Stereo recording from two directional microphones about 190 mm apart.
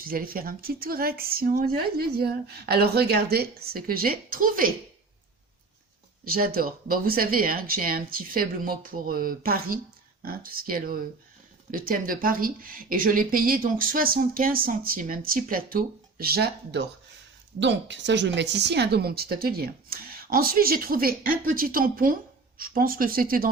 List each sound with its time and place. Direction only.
0.0 s speech: 50° right (ahead or behind)
6.2 s speech: 50° right (ahead or behind)
17.6 s a woman's voice: 70° right (ahead or behind); by 23.5 s 50° right (ahead or behind)